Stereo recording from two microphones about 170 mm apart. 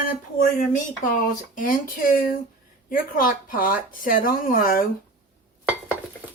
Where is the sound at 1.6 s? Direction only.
55° left (ahead or behind).